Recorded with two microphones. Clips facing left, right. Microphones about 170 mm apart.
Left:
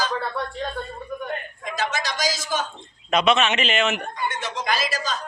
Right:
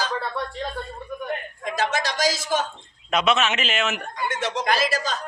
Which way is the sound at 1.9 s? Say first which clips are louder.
Right 3 dB; 65° right (ahead or behind).